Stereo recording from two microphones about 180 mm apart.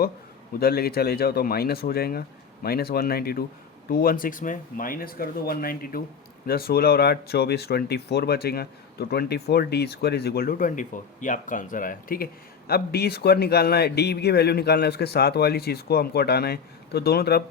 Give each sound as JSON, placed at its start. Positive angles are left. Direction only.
{"t": 0.6, "sound": "speech", "side_deg": 60}